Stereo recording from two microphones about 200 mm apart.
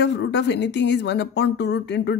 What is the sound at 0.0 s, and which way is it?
Speech, 60° left (ahead or behind).